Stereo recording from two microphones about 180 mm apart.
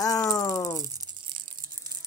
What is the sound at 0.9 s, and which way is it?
Crumpling, 20° right (ahead or behind).